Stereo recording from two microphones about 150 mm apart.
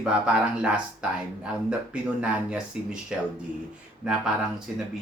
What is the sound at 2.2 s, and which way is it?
Speech, 5° right (ahead or behind).